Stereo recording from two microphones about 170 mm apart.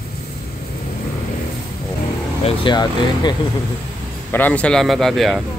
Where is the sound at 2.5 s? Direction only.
25° left (ahead or behind).